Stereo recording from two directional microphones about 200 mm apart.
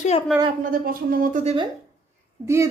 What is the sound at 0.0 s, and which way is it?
Speech, 30° left (ahead or behind).